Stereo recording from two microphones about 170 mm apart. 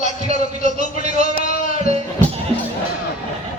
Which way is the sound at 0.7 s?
45° right (ahead or behind).